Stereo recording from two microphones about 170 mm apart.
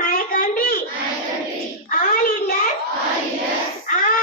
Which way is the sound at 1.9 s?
50° left (ahead or behind).